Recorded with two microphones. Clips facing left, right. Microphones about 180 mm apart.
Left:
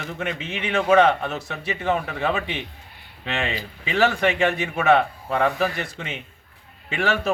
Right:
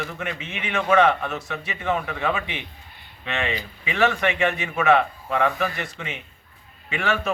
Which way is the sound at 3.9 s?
35° left (ahead or behind).